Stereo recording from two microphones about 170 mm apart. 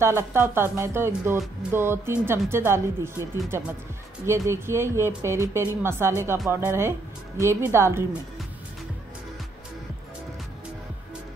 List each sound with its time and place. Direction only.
0.0 s speech: 15° right (ahead or behind)